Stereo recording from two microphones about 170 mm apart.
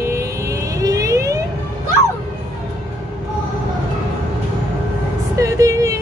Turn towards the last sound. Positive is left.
turn(degrees=-20)  # may be behind; listen again after turning